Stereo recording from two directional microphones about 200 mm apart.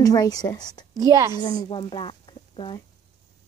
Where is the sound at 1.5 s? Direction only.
25° left (ahead or behind).